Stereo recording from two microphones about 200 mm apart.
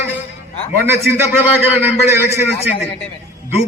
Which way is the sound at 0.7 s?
10° right (ahead or behind).